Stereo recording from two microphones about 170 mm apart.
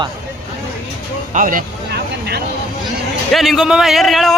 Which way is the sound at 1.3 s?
55° right (ahead or behind).